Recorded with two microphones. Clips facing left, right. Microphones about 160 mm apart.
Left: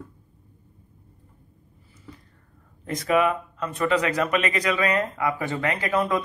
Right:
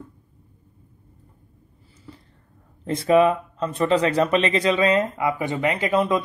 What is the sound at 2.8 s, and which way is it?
Speech, 30° right (ahead or behind).